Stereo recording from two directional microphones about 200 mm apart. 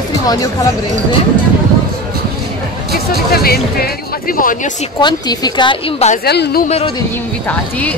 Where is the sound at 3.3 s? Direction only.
50° left (ahead or behind).